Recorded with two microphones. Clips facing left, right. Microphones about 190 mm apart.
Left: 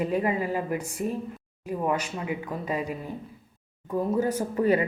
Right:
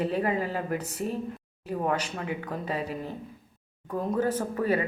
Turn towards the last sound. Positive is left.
turn(degrees=15)  # may be behind; listen again after turning